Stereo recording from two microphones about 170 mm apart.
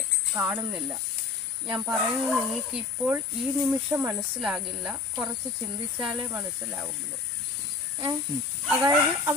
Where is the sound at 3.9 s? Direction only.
15° right (ahead or behind).